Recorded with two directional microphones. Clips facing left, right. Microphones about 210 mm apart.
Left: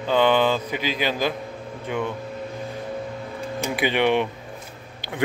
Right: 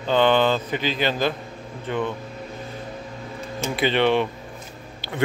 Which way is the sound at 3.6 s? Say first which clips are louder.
Right 1 dB; 15° left (ahead or behind).